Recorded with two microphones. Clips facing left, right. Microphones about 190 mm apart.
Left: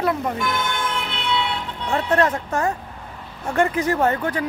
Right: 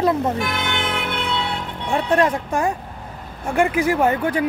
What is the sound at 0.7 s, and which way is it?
Music, 70° right (ahead or behind).